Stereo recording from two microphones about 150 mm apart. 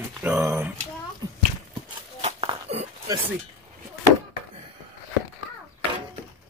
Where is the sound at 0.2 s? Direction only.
15° right (ahead or behind).